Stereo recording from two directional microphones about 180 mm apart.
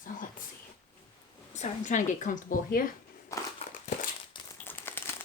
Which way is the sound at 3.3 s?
20° left (ahead or behind).